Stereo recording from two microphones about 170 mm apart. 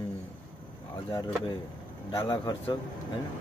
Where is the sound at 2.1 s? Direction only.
25° left (ahead or behind).